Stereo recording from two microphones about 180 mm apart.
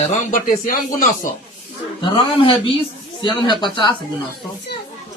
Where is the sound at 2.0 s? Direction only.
25° left (ahead or behind).